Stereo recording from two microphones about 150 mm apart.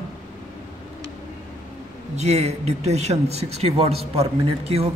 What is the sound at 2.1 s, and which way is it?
Speech, 45° right (ahead or behind).